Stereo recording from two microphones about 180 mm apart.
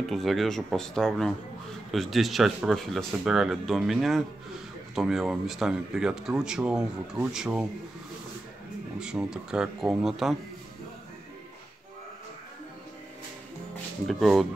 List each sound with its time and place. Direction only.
0.1 s a man's voice: centre (ahead or behind)
9.0 s a man's voice: 5° right (ahead or behind)
14.0 s a man's voice: centre (ahead or behind)